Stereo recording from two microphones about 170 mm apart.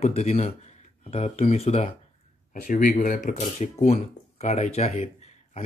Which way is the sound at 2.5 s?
50° left (ahead or behind).